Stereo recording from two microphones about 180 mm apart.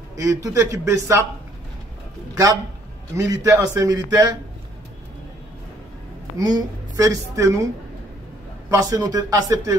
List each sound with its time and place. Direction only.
0.1 s a man's voice: 20° right (ahead or behind)
3.2 s a man's voice: 15° right (ahead or behind)
6.3 s speech: 20° right (ahead or behind)
8.6 s speech: 20° right (ahead or behind)